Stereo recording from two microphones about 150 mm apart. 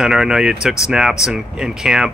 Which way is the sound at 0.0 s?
5° right (ahead or behind).